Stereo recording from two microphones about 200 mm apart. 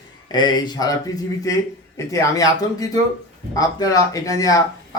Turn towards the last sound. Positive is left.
turn(degrees=20)  # may be behind; listen again after turning